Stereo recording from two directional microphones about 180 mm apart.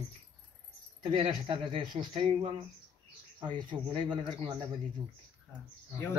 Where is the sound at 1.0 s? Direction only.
30° right (ahead or behind).